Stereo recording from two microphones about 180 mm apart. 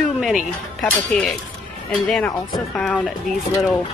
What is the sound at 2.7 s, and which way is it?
Speech, 5° left (ahead or behind).